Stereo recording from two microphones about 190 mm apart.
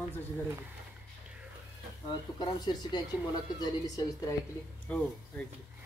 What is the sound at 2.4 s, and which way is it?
Speech, 20° left (ahead or behind).